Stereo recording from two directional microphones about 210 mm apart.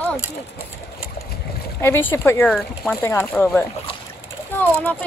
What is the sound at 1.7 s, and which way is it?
Speech, 10° left (ahead or behind).